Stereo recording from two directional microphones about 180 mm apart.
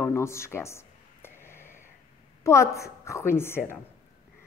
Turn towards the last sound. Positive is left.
turn(degrees=15)  # may be behind; listen again after turning